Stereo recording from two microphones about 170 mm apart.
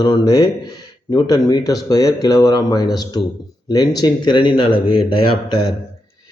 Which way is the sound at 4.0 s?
25° left (ahead or behind).